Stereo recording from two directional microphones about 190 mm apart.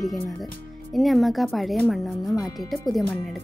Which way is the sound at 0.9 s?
Centre (ahead or behind).